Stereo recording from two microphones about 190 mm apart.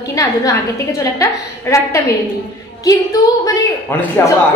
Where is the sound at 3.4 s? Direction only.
20° left (ahead or behind).